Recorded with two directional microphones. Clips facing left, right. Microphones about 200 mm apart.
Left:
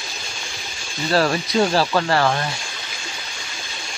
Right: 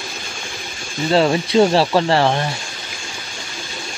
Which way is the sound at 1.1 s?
25° right (ahead or behind).